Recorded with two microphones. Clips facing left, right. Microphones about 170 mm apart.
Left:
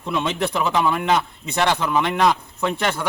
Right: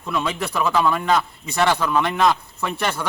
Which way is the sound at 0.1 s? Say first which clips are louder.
Left 2 dB; 25° left (ahead or behind).